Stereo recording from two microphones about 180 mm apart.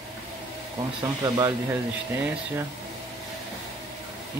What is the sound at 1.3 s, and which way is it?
Speech, 15° right (ahead or behind).